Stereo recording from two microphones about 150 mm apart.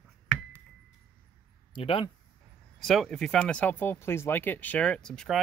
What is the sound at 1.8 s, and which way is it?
Speech, 35° left (ahead or behind).